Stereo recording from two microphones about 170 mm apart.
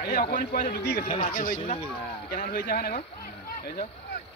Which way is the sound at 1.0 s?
35° left (ahead or behind).